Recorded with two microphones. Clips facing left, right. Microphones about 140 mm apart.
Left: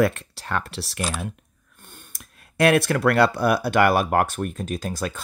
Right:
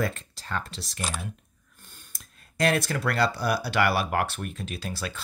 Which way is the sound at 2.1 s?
60° left (ahead or behind).